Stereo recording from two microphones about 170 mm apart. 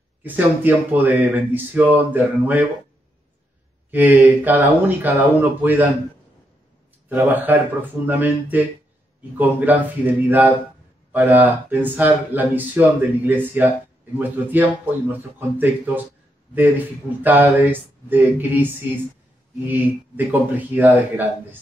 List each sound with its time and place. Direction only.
0.2 s speech: 10° right (ahead or behind)
3.9 s speech: 10° right (ahead or behind)
7.1 s speech: 10° right (ahead or behind)